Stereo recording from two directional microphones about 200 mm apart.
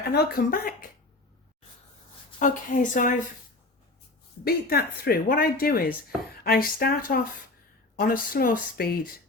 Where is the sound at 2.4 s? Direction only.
40° left (ahead or behind).